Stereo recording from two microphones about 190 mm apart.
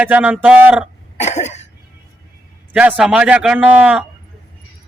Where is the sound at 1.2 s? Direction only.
35° left (ahead or behind).